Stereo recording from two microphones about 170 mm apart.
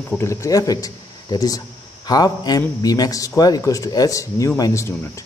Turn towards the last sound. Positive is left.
turn(degrees=15)  # may be behind; listen again after turning